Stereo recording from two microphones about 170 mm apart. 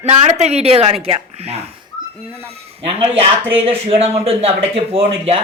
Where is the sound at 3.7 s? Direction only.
35° right (ahead or behind).